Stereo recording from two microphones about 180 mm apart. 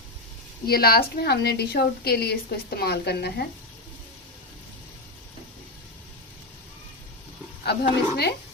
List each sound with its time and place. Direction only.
0.7 s a woman's voice: 60° left (ahead or behind)
7.6 s a woman's voice: 65° left (ahead or behind)